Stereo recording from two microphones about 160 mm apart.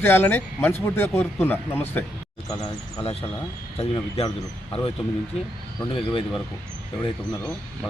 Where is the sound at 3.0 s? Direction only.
40° left (ahead or behind).